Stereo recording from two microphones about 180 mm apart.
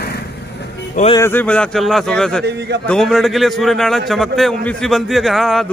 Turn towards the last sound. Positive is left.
turn(degrees=0)  # may be behind; listen again after turning